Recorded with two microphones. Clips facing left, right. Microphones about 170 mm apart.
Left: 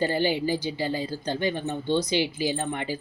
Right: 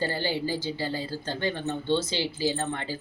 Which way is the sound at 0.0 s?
15° left (ahead or behind).